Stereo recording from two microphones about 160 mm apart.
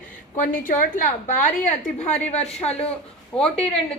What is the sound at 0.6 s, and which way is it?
Speech, 55° left (ahead or behind).